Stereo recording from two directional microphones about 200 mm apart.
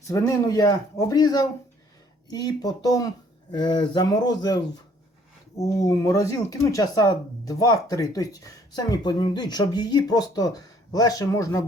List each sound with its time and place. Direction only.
0.1 s speech: 15° left (ahead or behind)